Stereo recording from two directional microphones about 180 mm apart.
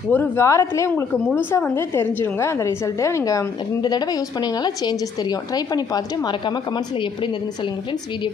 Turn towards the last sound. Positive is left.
turn(degrees=25)  # may be behind; listen again after turning